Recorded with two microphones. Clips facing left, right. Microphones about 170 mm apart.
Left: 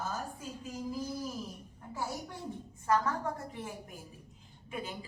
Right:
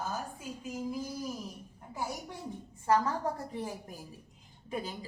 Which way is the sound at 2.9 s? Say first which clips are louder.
Right 2 dB; 35° right (ahead or behind).